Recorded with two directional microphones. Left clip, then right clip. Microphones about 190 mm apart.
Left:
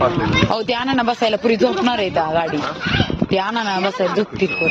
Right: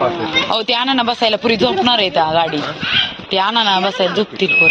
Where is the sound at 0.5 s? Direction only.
15° left (ahead or behind).